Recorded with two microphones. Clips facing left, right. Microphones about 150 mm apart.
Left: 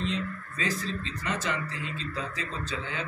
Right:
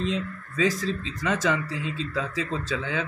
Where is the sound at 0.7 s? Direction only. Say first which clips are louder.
Right 5 dB; 90° right.